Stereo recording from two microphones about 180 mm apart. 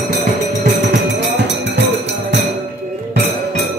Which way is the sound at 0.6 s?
75° right (ahead or behind).